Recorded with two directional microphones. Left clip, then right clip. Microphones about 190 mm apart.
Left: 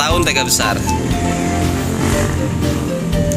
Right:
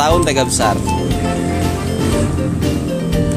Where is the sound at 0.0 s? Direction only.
15° right (ahead or behind).